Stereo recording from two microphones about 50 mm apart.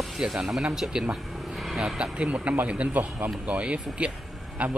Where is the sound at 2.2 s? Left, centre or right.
Right.